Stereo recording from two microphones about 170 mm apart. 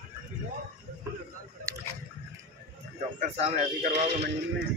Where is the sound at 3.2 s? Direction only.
40° right (ahead or behind).